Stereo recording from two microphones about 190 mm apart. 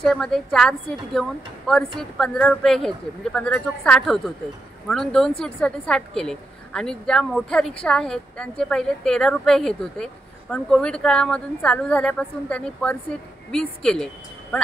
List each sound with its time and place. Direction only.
0.0 s a woman's voice: centre (ahead or behind)
2.0 s a woman's voice: centre (ahead or behind)